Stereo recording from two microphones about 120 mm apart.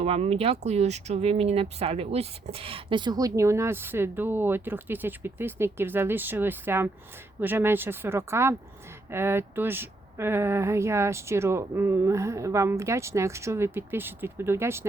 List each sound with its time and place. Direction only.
0.0 s speech: 60° right (ahead or behind); by 14.8 s 20° right (ahead or behind)